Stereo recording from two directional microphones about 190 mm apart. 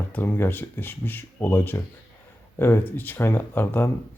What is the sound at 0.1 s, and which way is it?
Speech, 10° left (ahead or behind).